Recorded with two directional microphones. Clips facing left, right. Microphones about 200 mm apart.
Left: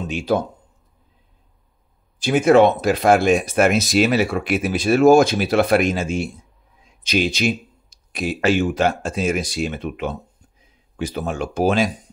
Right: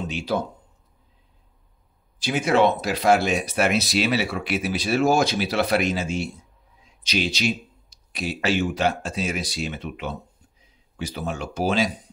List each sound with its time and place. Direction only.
0.1 s speech: 50° left (ahead or behind)
2.1 s speech: 50° left (ahead or behind)